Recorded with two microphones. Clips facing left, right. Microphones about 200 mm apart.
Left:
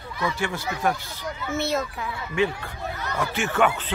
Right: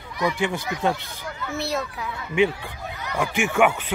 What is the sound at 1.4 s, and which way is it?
Speech, centre (ahead or behind).